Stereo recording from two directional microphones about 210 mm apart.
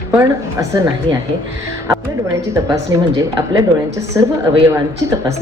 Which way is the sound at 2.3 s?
15° right (ahead or behind).